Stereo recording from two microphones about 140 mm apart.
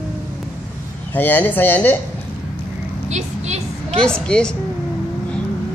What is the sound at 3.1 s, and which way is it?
Speech, 55° right (ahead or behind).